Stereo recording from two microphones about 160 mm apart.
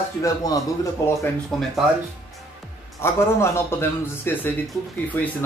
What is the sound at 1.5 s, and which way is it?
Speech, centre (ahead or behind).